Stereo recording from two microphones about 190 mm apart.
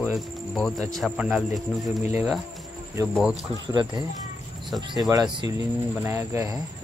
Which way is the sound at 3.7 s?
20° right (ahead or behind).